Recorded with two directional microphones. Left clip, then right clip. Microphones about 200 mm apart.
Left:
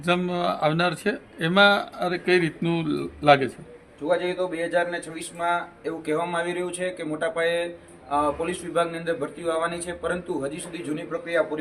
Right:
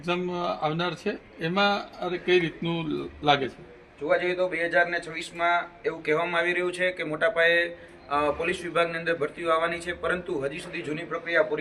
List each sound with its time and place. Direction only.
0.0 s speech: 60° left (ahead or behind)
4.1 s a man's voice: 10° left (ahead or behind)